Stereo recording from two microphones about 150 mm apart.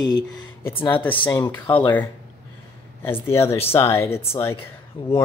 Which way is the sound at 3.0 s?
15° left (ahead or behind).